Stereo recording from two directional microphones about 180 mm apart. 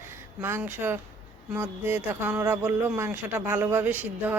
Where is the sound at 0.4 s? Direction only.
10° right (ahead or behind).